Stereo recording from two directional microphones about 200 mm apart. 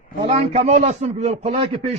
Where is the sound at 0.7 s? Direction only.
35° right (ahead or behind).